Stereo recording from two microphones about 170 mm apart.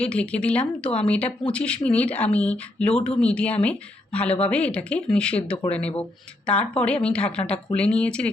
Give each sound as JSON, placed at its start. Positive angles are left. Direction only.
{"t": 0.0, "sound": "speech", "side_deg": 5}